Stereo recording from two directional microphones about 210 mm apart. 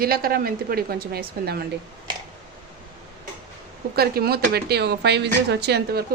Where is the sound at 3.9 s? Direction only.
50° right (ahead or behind).